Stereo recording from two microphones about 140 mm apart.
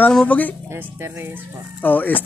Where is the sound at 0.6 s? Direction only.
15° right (ahead or behind).